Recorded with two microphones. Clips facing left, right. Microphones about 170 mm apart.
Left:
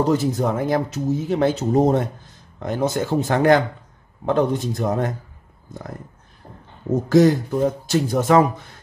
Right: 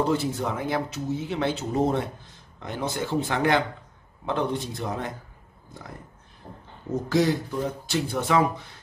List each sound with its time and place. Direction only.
0.0 s speech: 40° left (ahead or behind)
7.1 s speech: 45° left (ahead or behind)